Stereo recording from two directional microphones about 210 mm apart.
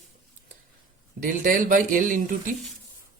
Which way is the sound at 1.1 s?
40° right (ahead or behind).